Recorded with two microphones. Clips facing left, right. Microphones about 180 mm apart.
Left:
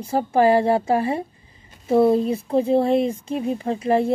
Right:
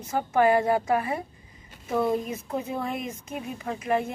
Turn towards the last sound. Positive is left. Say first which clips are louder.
# left 7 dB
turn(degrees=30)  # may be behind; listen again after turning